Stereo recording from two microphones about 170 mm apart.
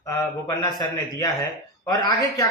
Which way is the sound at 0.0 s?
20° left (ahead or behind).